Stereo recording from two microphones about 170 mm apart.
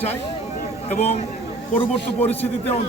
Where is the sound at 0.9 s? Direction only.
40° left (ahead or behind).